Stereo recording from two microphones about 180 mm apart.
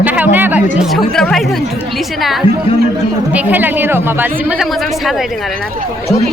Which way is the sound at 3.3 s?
10° right (ahead or behind).